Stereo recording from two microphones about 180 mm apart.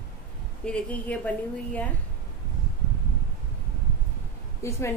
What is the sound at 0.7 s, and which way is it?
A woman's voice, 5° left (ahead or behind).